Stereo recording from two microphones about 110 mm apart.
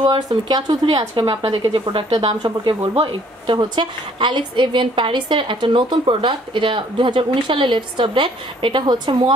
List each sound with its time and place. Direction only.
0.0 s speech: 40° right (ahead or behind)
1.5 s a woman's voice: 50° right (ahead or behind)
2.1 s speech: 40° right (ahead or behind)
2.9 s a woman's voice: 50° right (ahead or behind)